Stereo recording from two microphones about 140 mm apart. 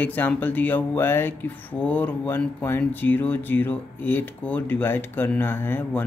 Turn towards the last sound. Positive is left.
turn(degrees=15)  # may be behind; listen again after turning